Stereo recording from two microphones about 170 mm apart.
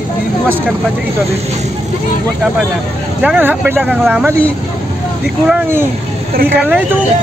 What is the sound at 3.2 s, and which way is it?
Speech, 10° right (ahead or behind).